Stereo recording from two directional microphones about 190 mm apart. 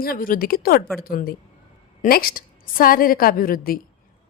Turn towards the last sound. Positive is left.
turn(degrees=50)  # may be behind; listen again after turning